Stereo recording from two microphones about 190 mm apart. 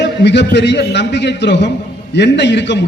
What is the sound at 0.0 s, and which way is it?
A man's voice, 65° left (ahead or behind).